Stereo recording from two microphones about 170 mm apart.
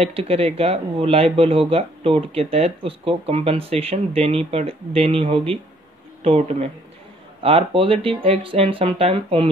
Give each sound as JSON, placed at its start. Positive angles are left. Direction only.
{"t": 0.0, "sound": "speech", "side_deg": -35}